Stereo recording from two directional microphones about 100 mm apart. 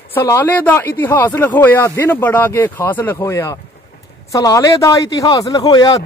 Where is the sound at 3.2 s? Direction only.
30° left (ahead or behind).